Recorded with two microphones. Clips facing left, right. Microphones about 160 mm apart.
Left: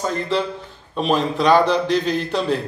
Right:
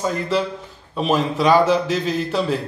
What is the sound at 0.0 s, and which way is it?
A man's voice, 5° right (ahead or behind).